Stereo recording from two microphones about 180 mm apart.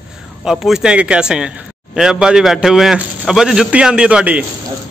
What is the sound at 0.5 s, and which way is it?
A man's voice, 5° right (ahead or behind).